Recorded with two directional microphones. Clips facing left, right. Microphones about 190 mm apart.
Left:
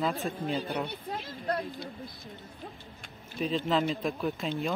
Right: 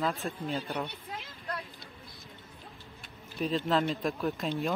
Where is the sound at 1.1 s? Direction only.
40° left (ahead or behind).